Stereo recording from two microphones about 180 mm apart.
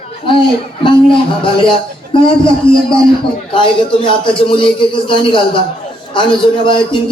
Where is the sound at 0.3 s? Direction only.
25° left (ahead or behind).